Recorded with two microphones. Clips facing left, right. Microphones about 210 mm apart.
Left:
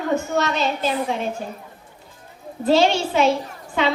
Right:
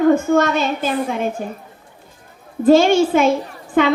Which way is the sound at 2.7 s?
50° right (ahead or behind).